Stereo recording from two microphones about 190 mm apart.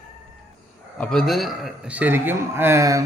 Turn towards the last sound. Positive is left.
turn(degrees=-15)  # may be behind; listen again after turning